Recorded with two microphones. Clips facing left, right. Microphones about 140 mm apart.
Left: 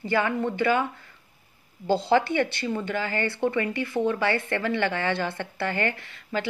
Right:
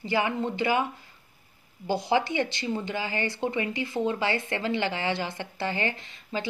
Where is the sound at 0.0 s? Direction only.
20° right (ahead or behind).